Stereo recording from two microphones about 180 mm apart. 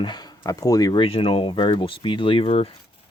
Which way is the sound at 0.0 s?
25° left (ahead or behind).